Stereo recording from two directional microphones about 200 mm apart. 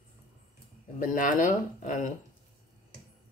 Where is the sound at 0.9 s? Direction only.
40° left (ahead or behind).